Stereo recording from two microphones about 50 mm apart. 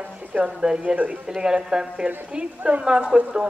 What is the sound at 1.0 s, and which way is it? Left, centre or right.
Speech, right.